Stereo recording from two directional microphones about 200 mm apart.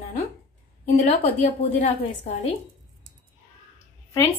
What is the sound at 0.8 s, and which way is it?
A woman's voice, 35° left (ahead or behind).